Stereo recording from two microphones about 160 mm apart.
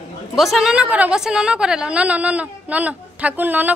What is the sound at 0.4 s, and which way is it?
A woman's voice, centre (ahead or behind).